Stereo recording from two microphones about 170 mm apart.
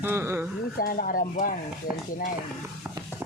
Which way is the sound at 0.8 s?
55° left (ahead or behind).